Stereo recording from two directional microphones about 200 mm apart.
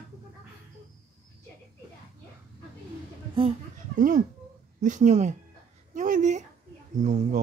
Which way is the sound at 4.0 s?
40° right (ahead or behind).